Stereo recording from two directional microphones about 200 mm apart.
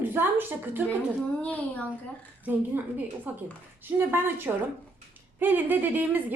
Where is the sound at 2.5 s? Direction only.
10° right (ahead or behind).